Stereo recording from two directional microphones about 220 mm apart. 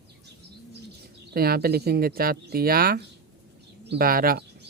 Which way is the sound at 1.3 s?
45° right (ahead or behind).